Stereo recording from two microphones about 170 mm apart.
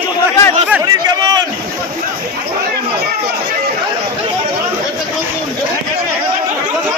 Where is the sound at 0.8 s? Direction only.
25° right (ahead or behind).